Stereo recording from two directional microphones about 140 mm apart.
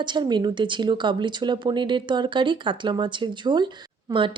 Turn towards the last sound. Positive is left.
turn(degrees=-35)  # may be behind; listen again after turning